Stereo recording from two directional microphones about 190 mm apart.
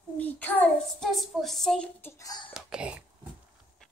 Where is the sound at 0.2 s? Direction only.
10° left (ahead or behind).